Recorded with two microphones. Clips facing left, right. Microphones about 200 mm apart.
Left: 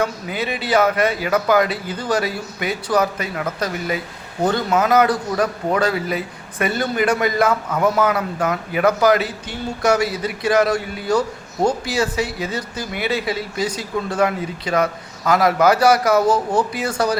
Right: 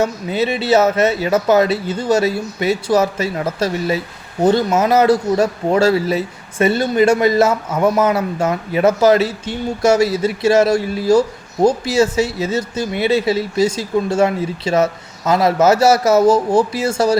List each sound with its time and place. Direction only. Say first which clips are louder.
0.0 s speech: right 5 dB; 25° right (ahead or behind)